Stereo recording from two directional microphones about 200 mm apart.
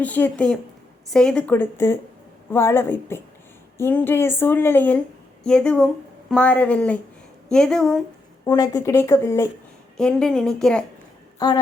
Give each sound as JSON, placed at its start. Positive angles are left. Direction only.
{"t": 0.0, "sound": "a woman's voice", "side_deg": 10}
{"t": 8.4, "sound": "speech", "side_deg": 15}
{"t": 10.0, "sound": "a woman's voice", "side_deg": 5}
{"t": 11.3, "sound": "speech", "side_deg": 20}